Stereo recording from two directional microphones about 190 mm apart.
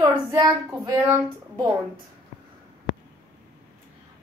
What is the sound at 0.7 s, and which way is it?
Speech, 10° right (ahead or behind).